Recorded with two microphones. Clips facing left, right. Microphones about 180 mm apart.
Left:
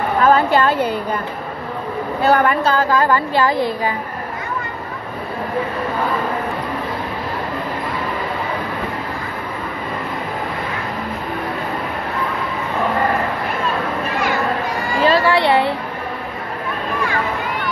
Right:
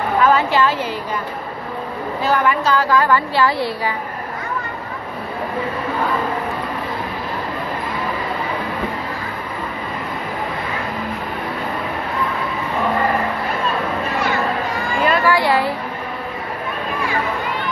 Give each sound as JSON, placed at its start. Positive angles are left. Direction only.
{"t": 0.2, "sound": "a sound", "side_deg": 50}
{"t": 2.2, "sound": "a woman's voice", "side_deg": 55}
{"t": 15.0, "sound": "a child's voice", "side_deg": 30}